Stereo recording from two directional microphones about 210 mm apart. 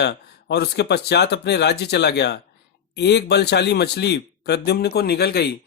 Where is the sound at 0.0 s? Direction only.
55° left (ahead or behind).